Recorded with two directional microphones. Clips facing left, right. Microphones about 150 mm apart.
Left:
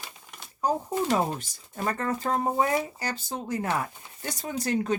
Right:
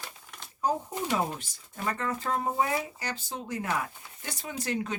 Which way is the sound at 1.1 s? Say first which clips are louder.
Left 3 dB; 40° left (ahead or behind).